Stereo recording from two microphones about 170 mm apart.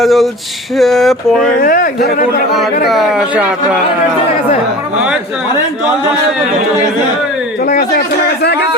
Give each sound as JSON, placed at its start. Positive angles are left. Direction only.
{"t": 0.0, "sound": "speech", "side_deg": 0}
{"t": 1.6, "sound": "speech", "side_deg": 55}
{"t": 2.8, "sound": "speech", "side_deg": 0}
{"t": 7.7, "sound": "speech", "side_deg": 65}